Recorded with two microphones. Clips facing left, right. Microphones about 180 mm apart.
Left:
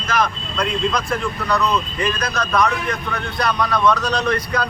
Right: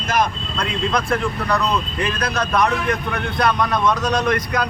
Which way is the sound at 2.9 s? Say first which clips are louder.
Right 2 dB; 55° right (ahead or behind).